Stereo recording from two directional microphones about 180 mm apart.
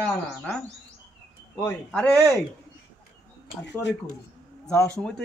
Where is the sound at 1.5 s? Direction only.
20° left (ahead or behind).